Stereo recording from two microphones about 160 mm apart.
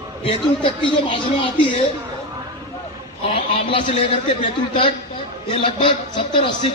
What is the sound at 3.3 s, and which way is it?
Speech, 35° left (ahead or behind).